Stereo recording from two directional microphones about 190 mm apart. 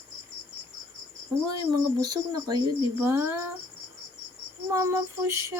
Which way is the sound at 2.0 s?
20° right (ahead or behind).